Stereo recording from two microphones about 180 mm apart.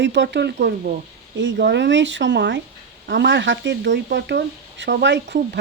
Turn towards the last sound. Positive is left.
turn(degrees=-70)  # may be behind; listen again after turning